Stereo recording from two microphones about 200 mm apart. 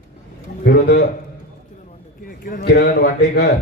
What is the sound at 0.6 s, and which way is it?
Speech, 55° left (ahead or behind).